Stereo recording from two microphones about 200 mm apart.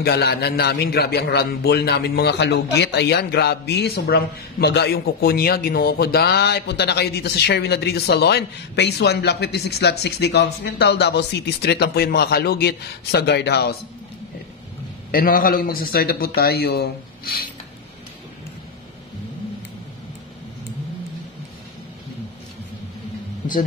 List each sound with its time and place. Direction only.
0.0 s a man's voice: 55° left (ahead or behind)
15.0 s a man's voice: 45° left (ahead or behind)